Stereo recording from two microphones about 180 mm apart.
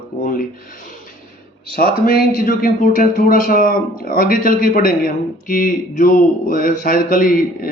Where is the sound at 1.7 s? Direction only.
55° left (ahead or behind).